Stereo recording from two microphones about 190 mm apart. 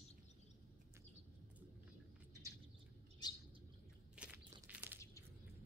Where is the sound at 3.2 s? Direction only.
20° left (ahead or behind).